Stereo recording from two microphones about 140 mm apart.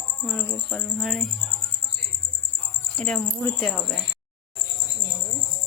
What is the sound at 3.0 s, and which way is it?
Speech, 5° left (ahead or behind).